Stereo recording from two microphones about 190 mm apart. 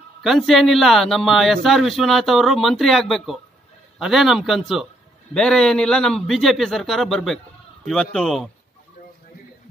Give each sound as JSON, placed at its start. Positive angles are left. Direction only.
{"t": 0.2, "sound": "a man's voice", "side_deg": 0}